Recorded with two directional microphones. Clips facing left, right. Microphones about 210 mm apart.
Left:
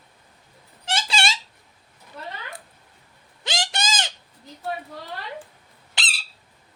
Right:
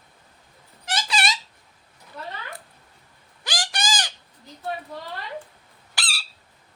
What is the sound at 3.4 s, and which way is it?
Bird, 25° left (ahead or behind).